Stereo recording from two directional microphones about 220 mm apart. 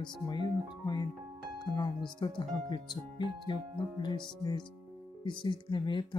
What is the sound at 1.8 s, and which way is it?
Speech, 15° left (ahead or behind).